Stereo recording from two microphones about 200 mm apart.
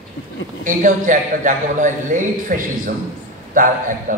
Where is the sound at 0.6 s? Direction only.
40° right (ahead or behind).